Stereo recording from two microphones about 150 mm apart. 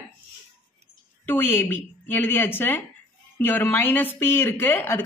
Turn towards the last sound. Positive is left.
turn(degrees=15)  # may be behind; listen again after turning